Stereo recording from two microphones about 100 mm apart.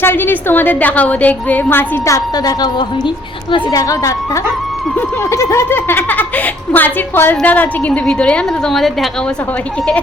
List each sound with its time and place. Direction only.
0.0 s speech: 20° left (ahead or behind)
2.0 s a woman's voice: 35° left (ahead or behind); by 9.0 s centre (ahead or behind)